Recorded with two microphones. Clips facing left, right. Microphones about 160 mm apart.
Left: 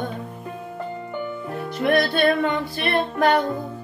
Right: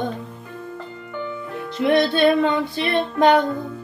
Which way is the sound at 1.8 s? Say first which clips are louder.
Right 2 dB; 20° right (ahead or behind).